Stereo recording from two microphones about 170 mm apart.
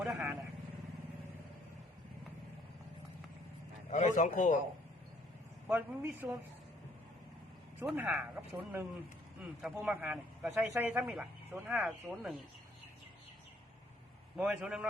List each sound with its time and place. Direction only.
0.0 s vehicle: 5° right (ahead or behind)
3.8 s speech: 45° left (ahead or behind)
5.6 s a man's voice: 10° right (ahead or behind)
7.8 s a man's voice: 10° right (ahead or behind)
14.3 s a man's voice: 5° right (ahead or behind)